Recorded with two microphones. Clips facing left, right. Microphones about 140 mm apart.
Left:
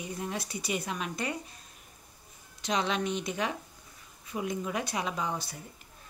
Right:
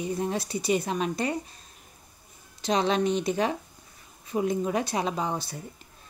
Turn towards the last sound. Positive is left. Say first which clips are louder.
# right 4 dB
turn(degrees=-30)  # may be behind; listen again after turning